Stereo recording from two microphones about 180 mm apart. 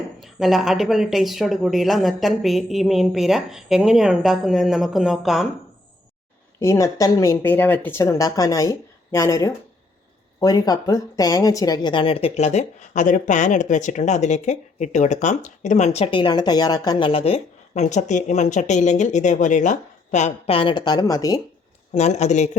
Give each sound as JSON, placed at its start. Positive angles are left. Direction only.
{"t": 0.2, "sound": "speech", "side_deg": 0}
{"t": 6.6, "sound": "speech", "side_deg": 15}
{"t": 21.9, "sound": "speech", "side_deg": 40}